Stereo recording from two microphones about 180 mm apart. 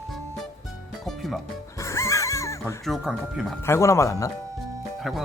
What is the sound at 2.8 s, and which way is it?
Speech, centre (ahead or behind).